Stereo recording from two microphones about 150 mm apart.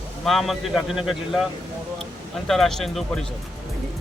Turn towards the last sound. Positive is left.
turn(degrees=0)  # may be behind; listen again after turning